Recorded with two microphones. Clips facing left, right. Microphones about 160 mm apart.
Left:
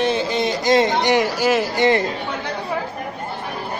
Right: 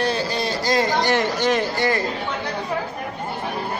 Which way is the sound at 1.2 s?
5° left (ahead or behind).